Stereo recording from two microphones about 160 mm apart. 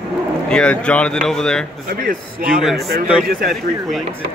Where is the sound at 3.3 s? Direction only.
70° right (ahead or behind).